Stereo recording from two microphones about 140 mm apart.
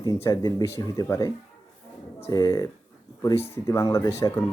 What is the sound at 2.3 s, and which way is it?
Speech, 25° left (ahead or behind).